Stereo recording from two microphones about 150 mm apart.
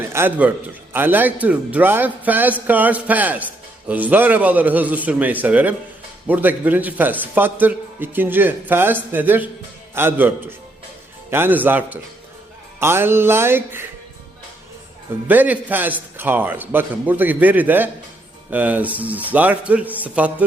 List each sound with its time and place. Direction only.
0.1 s a man's voice: 15° right (ahead or behind)
15.3 s a man's voice: 10° right (ahead or behind)